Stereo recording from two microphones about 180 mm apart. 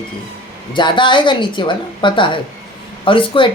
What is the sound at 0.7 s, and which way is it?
A woman's voice, 25° left (ahead or behind).